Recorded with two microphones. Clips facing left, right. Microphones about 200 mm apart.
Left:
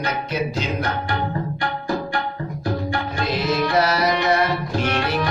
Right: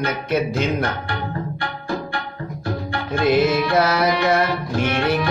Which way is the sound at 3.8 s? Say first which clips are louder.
Right 1 dB; 55° right (ahead or behind).